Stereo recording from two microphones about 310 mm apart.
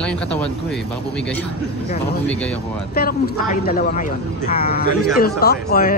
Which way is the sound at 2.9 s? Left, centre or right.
Left.